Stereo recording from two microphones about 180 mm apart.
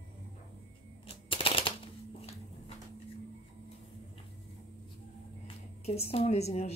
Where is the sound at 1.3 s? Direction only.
30° left (ahead or behind).